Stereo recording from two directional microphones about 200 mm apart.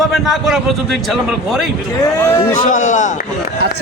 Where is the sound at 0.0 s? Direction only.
Centre (ahead or behind).